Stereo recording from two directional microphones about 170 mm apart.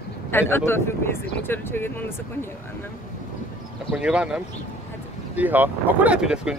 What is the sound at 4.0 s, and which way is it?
Speech, 5° right (ahead or behind).